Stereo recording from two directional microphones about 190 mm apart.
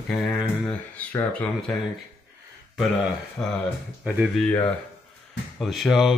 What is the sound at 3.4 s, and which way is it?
Speech, 5° left (ahead or behind).